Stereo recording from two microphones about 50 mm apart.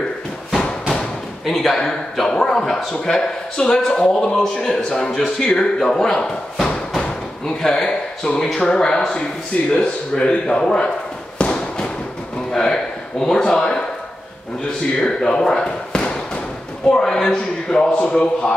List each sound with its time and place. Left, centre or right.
0.6 s a sound: centre
1.4 s speech: centre
7.0 s slam: centre
8.4 s speech: centre
11.3 s fireworks: centre
12.4 s a man's voice: centre
15.0 s speech: centre